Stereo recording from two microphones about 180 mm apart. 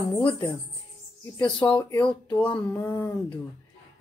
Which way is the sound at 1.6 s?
25° left (ahead or behind).